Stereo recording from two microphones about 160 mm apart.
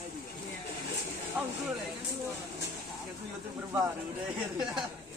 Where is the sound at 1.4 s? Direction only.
5° right (ahead or behind).